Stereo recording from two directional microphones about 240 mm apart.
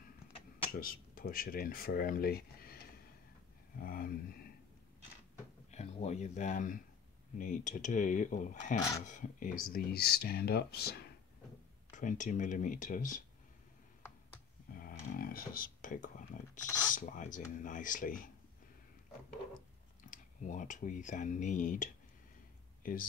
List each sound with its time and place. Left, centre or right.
0.7 s speech: left
5.7 s speech: left
11.9 s speech: left
14.7 s speech: left
20.0 s speech: left